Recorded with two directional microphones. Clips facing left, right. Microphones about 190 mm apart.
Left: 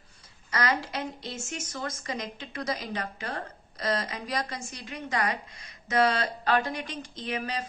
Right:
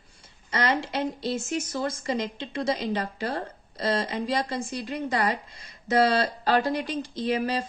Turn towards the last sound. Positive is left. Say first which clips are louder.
# right 7 dB
turn(degrees=-30)  # may be behind; listen again after turning